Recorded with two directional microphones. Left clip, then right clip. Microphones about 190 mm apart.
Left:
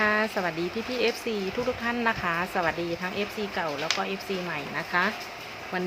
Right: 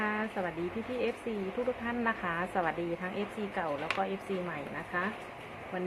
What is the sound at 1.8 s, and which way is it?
Speech, 20° left (ahead or behind).